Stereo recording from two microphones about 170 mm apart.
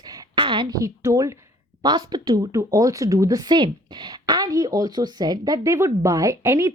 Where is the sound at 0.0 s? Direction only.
25° right (ahead or behind).